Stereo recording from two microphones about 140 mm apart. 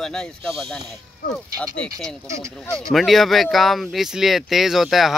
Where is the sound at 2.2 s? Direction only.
20° right (ahead or behind).